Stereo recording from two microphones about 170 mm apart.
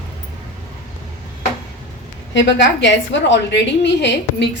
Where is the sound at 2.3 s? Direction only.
90° left.